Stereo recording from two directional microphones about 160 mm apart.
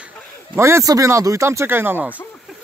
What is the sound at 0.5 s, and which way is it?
Speech, 15° right (ahead or behind).